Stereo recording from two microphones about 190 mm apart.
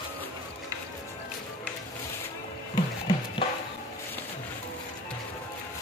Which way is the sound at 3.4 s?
30° left (ahead or behind).